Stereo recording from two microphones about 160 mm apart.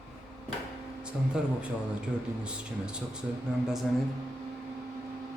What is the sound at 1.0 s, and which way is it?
Speech, 5° right (ahead or behind).